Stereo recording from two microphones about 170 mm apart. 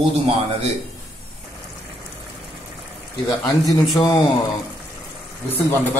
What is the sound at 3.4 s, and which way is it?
Speech, 25° left (ahead or behind).